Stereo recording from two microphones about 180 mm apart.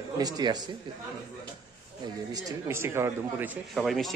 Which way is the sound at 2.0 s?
20° right (ahead or behind).